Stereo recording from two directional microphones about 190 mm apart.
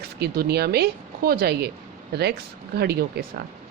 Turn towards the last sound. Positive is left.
turn(degrees=-60)  # may be behind; listen again after turning